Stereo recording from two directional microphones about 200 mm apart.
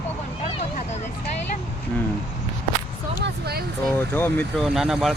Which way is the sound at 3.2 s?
50° right (ahead or behind).